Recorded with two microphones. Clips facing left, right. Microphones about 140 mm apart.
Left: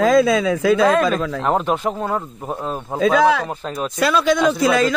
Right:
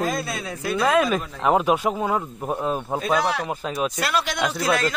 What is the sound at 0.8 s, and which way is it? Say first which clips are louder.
Speech: left 4 dB; 10° right (ahead or behind).